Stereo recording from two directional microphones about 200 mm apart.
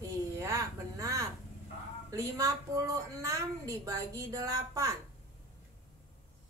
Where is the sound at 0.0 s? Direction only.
15° right (ahead or behind).